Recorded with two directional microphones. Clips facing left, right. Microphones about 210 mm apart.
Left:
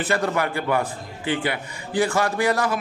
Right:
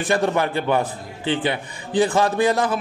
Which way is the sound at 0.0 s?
20° right (ahead or behind).